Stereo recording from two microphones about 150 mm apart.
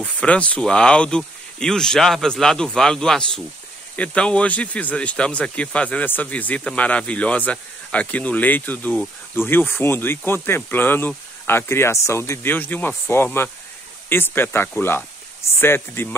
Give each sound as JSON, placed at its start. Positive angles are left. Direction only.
{"t": 0.0, "sound": "speech", "side_deg": 10}